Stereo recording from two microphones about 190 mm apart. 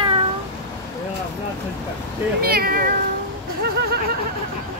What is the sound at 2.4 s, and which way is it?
Speech, 55° right (ahead or behind).